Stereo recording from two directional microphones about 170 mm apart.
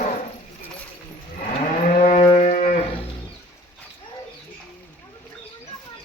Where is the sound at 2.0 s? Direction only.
40° left (ahead or behind).